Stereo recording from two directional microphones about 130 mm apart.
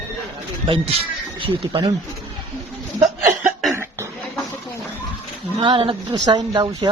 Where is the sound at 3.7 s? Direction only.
20° right (ahead or behind).